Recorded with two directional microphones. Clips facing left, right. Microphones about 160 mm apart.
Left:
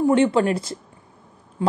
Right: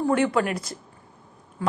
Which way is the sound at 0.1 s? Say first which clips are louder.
Left 5 dB; 25° left (ahead or behind).